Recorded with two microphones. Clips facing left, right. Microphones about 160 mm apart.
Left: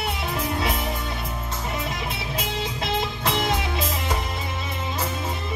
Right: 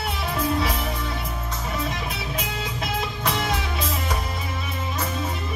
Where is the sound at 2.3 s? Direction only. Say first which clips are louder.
Left 1 dB; 25° left (ahead or behind).